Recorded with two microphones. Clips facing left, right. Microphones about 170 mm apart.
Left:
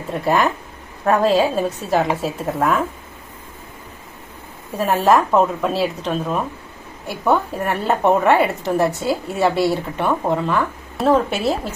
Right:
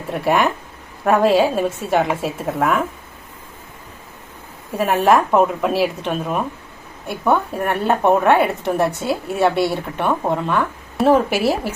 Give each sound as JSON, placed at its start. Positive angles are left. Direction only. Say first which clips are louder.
{"t": 0.1, "sound": "speech", "louder": "right 1 dB", "side_deg": 0}
{"t": 4.8, "sound": "speech", "louder": "even", "side_deg": 0}